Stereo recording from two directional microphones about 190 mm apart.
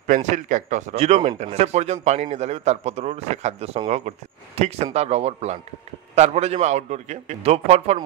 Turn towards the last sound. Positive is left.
turn(degrees=-35)  # may be behind; listen again after turning